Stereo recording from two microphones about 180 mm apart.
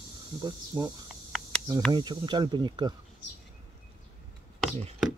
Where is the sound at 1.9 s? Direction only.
25° right (ahead or behind).